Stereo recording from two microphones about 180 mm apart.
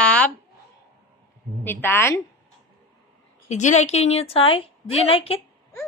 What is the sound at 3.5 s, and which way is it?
A woman's voice, 40° left (ahead or behind).